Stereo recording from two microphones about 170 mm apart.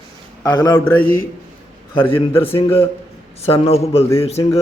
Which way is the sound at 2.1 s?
35° left (ahead or behind).